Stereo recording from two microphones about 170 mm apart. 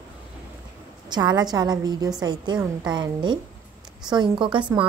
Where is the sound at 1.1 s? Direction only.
25° right (ahead or behind).